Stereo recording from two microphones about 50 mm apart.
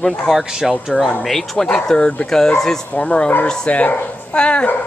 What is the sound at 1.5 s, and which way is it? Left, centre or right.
Speech, centre.